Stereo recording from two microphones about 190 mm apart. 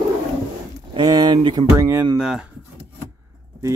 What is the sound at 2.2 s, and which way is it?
Speech, 5° right (ahead or behind).